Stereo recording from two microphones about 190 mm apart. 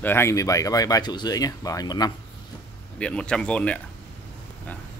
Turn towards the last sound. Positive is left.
turn(degrees=5)  # may be behind; listen again after turning